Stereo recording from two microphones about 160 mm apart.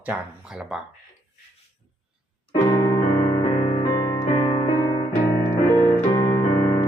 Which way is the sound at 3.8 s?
20° left (ahead or behind).